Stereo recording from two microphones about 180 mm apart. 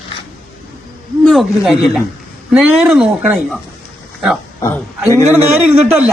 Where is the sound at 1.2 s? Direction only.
Centre (ahead or behind).